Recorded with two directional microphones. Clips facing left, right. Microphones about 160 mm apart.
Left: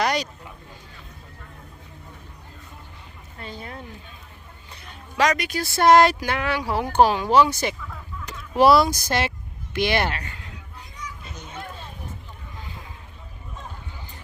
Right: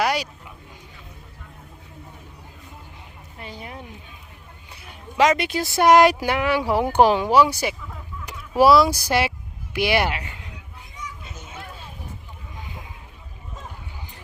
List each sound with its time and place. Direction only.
0.0 s a sound: 5° right (ahead or behind)
3.3 s a sound: 15° right (ahead or behind)
5.2 s speech: 25° right (ahead or behind); by 7.8 s 10° right (ahead or behind)
8.3 s fowl: 10° right (ahead or behind)
9.7 s speech: 10° right (ahead or behind)
11.0 s children playing: 5° right (ahead or behind)